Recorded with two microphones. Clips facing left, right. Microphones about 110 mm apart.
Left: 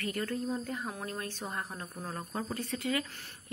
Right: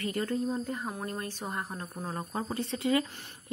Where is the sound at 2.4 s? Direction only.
25° right (ahead or behind).